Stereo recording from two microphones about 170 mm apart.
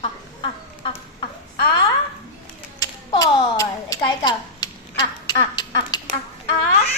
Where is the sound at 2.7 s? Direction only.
20° left (ahead or behind).